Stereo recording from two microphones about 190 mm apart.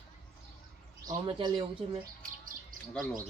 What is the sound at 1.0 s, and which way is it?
Speech, 25° right (ahead or behind).